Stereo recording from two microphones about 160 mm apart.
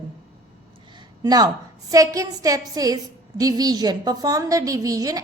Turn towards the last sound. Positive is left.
turn(degrees=-20)  # may be behind; listen again after turning